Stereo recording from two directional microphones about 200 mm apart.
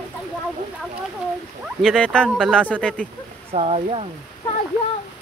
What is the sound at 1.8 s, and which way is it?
Speech, 5° left (ahead or behind).